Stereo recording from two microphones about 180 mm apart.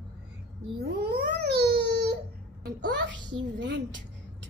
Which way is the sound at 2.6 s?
75° right (ahead or behind).